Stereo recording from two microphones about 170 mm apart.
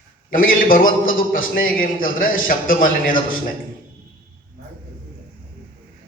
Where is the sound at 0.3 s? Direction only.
55° left (ahead or behind).